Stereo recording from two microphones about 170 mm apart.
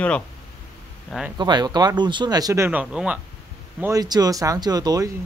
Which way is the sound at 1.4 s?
25° right (ahead or behind).